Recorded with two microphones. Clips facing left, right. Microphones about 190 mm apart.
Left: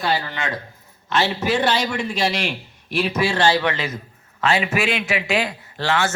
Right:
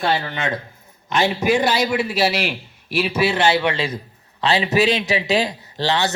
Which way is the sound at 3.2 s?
25° right (ahead or behind).